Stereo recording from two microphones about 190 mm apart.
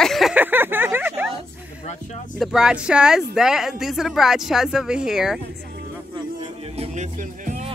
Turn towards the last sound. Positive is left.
turn(degrees=-40)  # may be behind; listen again after turning